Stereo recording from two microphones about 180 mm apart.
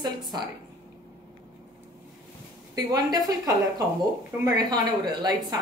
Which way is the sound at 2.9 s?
20° right (ahead or behind).